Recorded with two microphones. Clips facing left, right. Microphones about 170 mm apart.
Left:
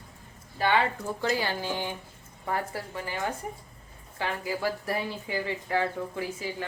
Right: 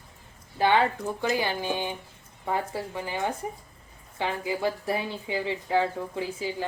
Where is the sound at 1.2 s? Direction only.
15° right (ahead or behind).